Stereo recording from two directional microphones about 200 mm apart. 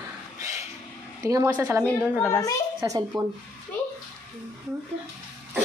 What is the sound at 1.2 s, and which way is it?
Speech, 15° right (ahead or behind).